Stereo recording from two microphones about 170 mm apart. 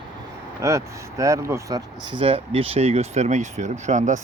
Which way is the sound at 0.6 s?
20° right (ahead or behind).